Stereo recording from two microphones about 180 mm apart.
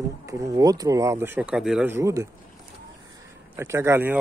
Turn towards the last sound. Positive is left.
turn(degrees=-10)  # may be behind; listen again after turning